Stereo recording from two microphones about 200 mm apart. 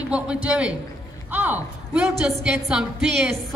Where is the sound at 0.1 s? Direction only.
5° right (ahead or behind).